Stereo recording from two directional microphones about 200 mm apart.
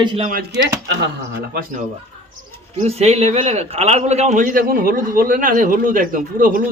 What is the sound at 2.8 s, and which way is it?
A man's voice, 30° right (ahead or behind).